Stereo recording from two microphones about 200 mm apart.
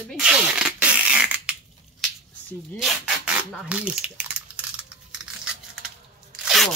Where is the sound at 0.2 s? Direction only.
5° right (ahead or behind).